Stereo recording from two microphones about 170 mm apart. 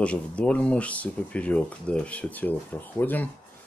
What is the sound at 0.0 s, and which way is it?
Speech, 5° left (ahead or behind).